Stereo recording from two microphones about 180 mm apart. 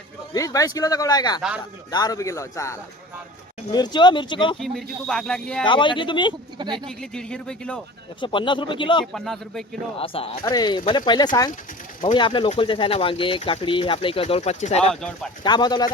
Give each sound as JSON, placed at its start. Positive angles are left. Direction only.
{"t": 0.3, "sound": "speech", "side_deg": 20}
{"t": 1.4, "sound": "speech", "side_deg": -5}
{"t": 1.9, "sound": "a man's voice", "side_deg": 20}
{"t": 4.6, "sound": "speech", "side_deg": 0}
{"t": 5.6, "sound": "speech", "side_deg": 25}
{"t": 6.6, "sound": "speech", "side_deg": -25}
{"t": 6.8, "sound": "speech", "side_deg": 5}
{"t": 8.2, "sound": "speech", "side_deg": 25}
{"t": 9.1, "sound": "speech", "side_deg": 0}
{"t": 10.0, "sound": "speech", "side_deg": 30}
{"t": 10.4, "sound": "speech", "side_deg": 20}
{"t": 15.4, "sound": "speech", "side_deg": 25}